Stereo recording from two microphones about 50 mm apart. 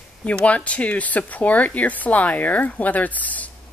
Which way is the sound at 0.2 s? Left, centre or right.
Left.